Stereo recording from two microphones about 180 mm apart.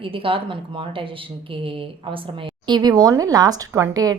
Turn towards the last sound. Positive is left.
turn(degrees=-20)  # may be behind; listen again after turning